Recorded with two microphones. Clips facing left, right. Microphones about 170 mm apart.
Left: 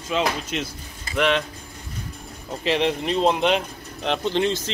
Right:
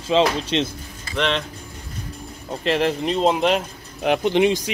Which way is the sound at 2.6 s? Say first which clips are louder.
Right 2 dB; centre (ahead or behind).